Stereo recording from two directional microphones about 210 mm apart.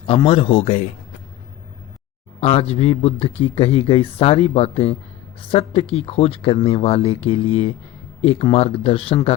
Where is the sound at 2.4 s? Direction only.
30° left (ahead or behind).